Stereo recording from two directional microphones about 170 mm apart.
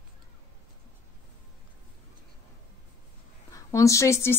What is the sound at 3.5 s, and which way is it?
Speech, 20° left (ahead or behind).